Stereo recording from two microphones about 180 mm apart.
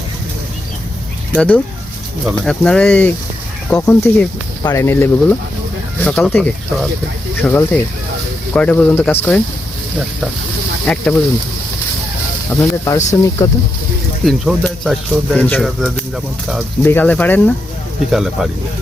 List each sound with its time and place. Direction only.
1.3 s speech: 5° left (ahead or behind)
3.8 s speech: 15° left (ahead or behind)
10.8 s speech: 5° left (ahead or behind)
12.5 s speech: 15° left (ahead or behind)
14.3 s speech: centre (ahead or behind)
16.8 s speech: 10° left (ahead or behind)
18.1 s speech: centre (ahead or behind)